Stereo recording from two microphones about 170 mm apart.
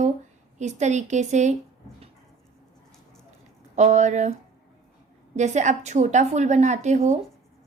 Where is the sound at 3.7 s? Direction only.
45° right (ahead or behind).